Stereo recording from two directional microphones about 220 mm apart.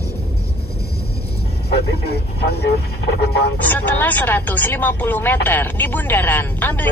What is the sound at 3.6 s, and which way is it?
Speech, 10° left (ahead or behind).